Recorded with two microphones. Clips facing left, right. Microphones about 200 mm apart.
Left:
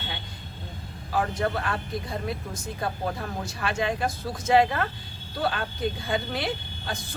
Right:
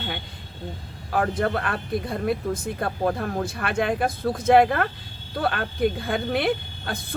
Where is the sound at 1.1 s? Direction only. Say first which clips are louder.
Right 3 dB; 55° right (ahead or behind).